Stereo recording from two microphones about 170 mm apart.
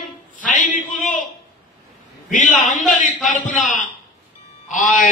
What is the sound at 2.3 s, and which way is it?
A man's voice, 50° left (ahead or behind).